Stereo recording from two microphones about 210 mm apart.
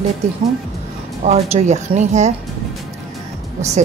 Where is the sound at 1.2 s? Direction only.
30° right (ahead or behind).